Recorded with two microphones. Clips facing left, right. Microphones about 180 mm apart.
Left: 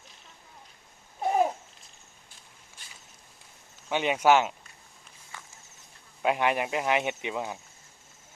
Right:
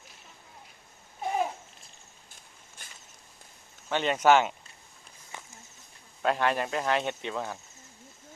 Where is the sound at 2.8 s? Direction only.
50° right (ahead or behind).